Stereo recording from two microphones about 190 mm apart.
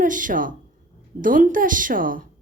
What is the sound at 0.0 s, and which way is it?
Speech, 45° right (ahead or behind).